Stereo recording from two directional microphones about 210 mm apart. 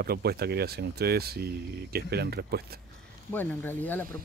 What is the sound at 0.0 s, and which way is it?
Speech, 50° right (ahead or behind).